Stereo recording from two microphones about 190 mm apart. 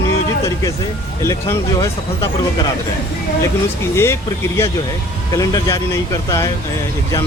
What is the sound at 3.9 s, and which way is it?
Speech, 15° left (ahead or behind).